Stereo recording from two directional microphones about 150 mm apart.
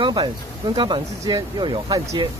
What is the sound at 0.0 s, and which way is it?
Speech, 30° right (ahead or behind).